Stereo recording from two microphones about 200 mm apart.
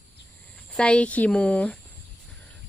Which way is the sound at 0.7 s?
5° left (ahead or behind).